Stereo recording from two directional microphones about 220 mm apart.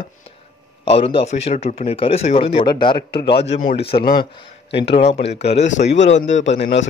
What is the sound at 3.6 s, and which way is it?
Speech, 40° left (ahead or behind).